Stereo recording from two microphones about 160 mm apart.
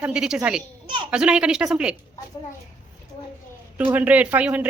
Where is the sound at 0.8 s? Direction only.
30° right (ahead or behind).